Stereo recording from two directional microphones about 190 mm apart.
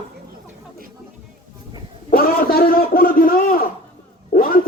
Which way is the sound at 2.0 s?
50° left (ahead or behind).